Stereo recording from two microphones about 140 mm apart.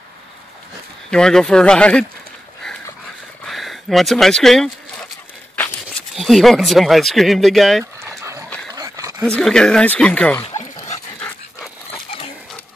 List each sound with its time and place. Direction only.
1.1 s speech: 5° left (ahead or behind)
3.4 s speech: centre (ahead or behind)
6.1 s speech: centre (ahead or behind)
8.2 s dog: 20° right (ahead or behind)
9.2 s speech: 5° left (ahead or behind)